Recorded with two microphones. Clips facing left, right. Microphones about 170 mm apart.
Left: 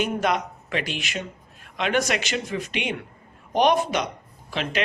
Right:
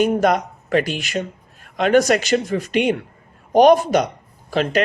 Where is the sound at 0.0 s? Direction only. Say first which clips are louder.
Right 7 dB; 40° right (ahead or behind).